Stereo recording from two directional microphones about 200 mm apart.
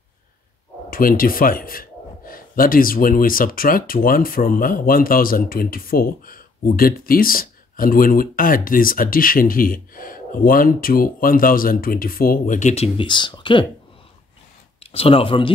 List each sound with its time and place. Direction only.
0.8 s speech: 45° left (ahead or behind); by 13.7 s 25° left (ahead or behind)
14.8 s speech: 30° left (ahead or behind)